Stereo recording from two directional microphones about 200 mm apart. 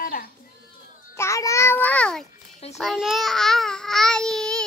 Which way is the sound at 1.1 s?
15° left (ahead or behind).